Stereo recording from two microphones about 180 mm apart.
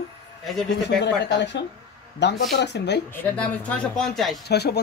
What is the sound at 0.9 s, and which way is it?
Speech, 75° left (ahead or behind).